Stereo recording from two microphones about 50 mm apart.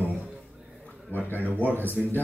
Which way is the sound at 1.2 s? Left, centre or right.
Left.